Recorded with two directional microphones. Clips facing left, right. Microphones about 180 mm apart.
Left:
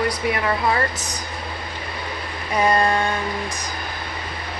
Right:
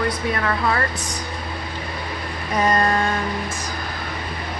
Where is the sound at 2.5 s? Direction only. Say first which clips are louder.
Left 1 dB; 10° left (ahead or behind).